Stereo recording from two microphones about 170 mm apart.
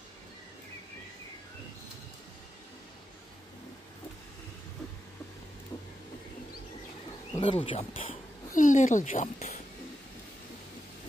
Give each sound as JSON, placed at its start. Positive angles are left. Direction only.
{"t": 7.3, "sound": "speech", "side_deg": 30}
{"t": 8.5, "sound": "speech", "side_deg": 50}